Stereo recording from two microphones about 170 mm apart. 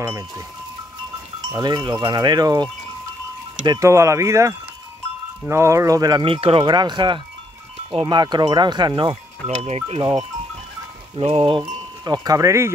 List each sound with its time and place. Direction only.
1.5 s speech: 20° right (ahead or behind)
9.5 s speech: 45° right (ahead or behind)
11.1 s speech: 35° right (ahead or behind); by 12.7 s 15° right (ahead or behind)